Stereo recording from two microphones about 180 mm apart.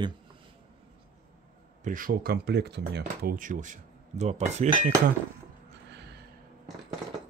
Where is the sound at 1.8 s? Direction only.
50° right (ahead or behind).